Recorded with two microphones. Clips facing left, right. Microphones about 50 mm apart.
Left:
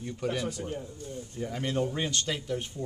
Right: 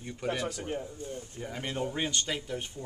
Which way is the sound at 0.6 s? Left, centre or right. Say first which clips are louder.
Right 1 dB; right.